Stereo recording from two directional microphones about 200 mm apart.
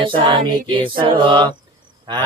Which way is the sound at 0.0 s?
25° right (ahead or behind).